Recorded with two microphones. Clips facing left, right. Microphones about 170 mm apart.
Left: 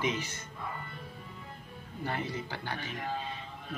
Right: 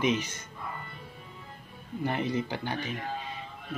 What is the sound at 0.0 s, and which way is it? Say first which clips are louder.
Speech: right 5 dB; 20° right (ahead or behind).